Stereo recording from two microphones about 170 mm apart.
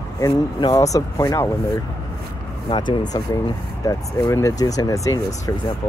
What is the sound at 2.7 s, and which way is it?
Speech, 30° left (ahead or behind).